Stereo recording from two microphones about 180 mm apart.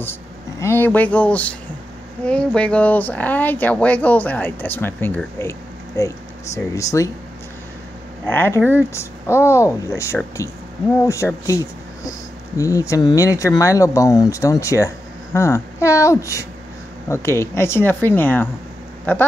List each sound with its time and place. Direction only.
0.0 s speech: 15° left (ahead or behind)
8.3 s speech: 10° left (ahead or behind)